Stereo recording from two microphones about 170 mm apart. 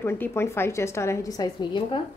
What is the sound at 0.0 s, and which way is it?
A woman's voice, 15° left (ahead or behind).